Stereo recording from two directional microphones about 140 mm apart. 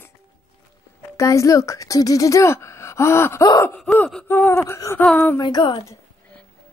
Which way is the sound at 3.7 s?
10° left (ahead or behind).